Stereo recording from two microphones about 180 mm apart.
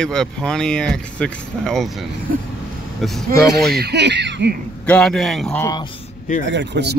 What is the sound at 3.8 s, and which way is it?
Speech, 70° right (ahead or behind).